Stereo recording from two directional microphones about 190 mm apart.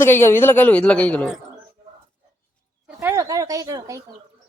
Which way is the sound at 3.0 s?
15° right (ahead or behind).